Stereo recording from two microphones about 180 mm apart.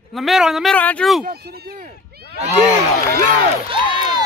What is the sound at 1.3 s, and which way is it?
Speech, 60° right (ahead or behind).